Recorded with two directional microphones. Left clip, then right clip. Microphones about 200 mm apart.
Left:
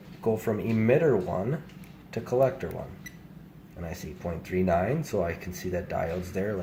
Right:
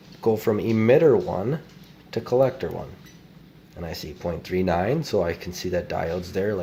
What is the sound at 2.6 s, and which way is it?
Speech, 65° right (ahead or behind).